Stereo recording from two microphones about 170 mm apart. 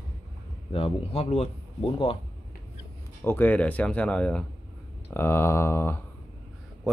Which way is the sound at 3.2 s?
10° left (ahead or behind).